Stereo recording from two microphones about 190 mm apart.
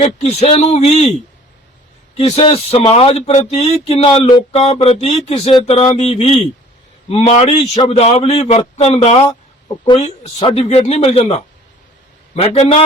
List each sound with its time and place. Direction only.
0.0 s a man's voice: 35° left (ahead or behind)
2.1 s a man's voice: 30° left (ahead or behind)
12.4 s a man's voice: 35° left (ahead or behind)